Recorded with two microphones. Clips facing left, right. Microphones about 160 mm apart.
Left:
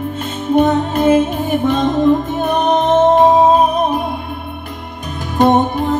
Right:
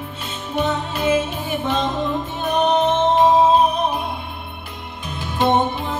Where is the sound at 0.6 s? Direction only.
50° left (ahead or behind).